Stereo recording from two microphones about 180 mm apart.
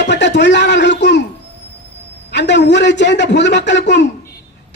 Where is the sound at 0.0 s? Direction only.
75° left (ahead or behind).